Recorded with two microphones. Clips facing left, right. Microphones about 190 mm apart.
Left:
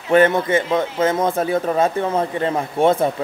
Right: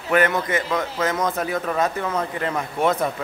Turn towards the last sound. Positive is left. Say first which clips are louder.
# left 5 dB
turn(degrees=30)  # may be behind; listen again after turning